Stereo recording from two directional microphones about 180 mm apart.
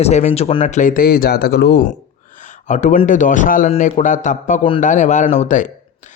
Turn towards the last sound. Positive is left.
turn(degrees=40)  # may be behind; listen again after turning